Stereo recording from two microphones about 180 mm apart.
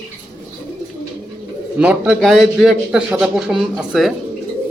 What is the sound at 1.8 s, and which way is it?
A man's voice, 5° right (ahead or behind).